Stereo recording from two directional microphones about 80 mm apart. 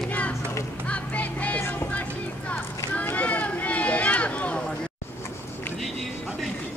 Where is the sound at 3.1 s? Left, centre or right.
Centre.